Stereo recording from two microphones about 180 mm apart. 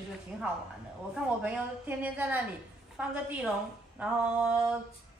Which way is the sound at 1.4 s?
10° right (ahead or behind).